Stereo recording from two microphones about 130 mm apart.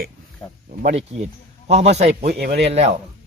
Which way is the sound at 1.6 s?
55° right (ahead or behind).